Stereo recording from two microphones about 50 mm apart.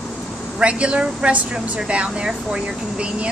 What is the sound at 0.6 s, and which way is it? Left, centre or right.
A woman's voice, right.